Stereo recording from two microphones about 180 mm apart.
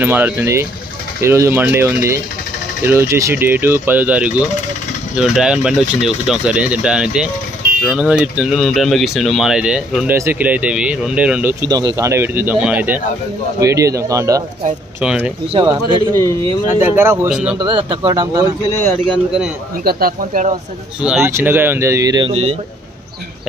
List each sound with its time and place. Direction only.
0.0 s speech: 10° right (ahead or behind)
11.6 s speech: 20° right (ahead or behind)
15.0 s speech: 5° right (ahead or behind)
15.5 s speech: 30° right (ahead or behind)
16.8 s speech: 10° right (ahead or behind)
17.6 s speech: 25° right (ahead or behind)
18.6 s speech: 10° left (ahead or behind)
19.8 s speech: 55° right (ahead or behind)
21.0 s speech: 10° right (ahead or behind)
22.3 s speech: 35° right (ahead or behind)